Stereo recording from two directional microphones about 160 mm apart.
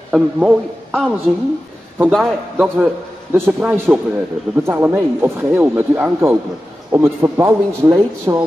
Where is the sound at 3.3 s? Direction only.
10° right (ahead or behind).